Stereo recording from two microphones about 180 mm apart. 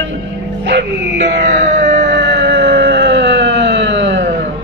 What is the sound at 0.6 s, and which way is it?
Dog, 75° right (ahead or behind).